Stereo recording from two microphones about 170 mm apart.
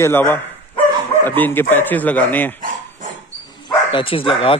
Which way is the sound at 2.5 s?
55° right (ahead or behind).